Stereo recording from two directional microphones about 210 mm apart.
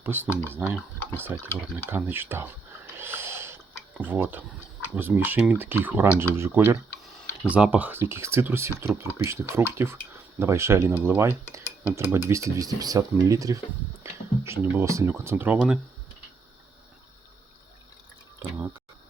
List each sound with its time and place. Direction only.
0.0 s speech: 10° right (ahead or behind)
3.0 s a sound: 10° right (ahead or behind)
4.9 s speech: 10° right (ahead or behind)